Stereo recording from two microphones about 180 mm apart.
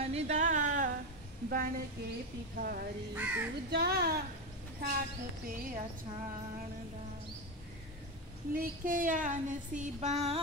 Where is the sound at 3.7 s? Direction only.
65° right (ahead or behind).